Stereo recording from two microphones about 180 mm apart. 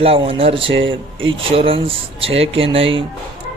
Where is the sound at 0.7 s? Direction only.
90° right.